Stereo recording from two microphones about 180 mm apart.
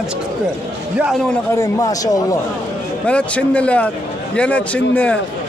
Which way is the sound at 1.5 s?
20° left (ahead or behind).